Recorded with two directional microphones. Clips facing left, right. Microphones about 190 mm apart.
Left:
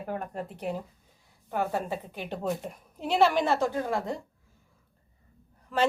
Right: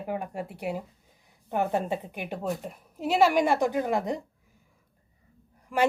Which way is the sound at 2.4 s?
Centre (ahead or behind).